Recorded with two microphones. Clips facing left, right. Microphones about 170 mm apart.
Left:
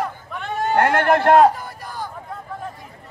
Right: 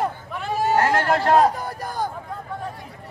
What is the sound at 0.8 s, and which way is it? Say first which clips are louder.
Speech: left 6 dB; 60° left (ahead or behind).